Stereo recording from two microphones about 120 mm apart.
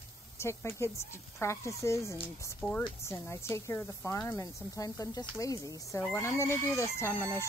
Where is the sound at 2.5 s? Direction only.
5° left (ahead or behind).